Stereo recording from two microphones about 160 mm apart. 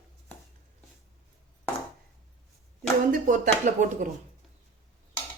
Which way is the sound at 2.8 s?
55° right (ahead or behind).